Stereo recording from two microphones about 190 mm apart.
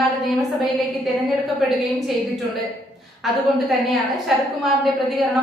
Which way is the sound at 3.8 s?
Centre (ahead or behind).